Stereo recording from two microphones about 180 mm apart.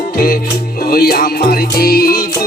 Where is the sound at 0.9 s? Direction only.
55° left (ahead or behind).